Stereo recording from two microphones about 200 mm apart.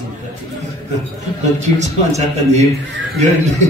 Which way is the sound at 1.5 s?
35° right (ahead or behind).